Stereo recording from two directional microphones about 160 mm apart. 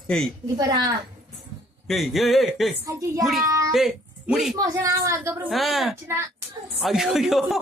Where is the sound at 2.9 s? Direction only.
20° right (ahead or behind).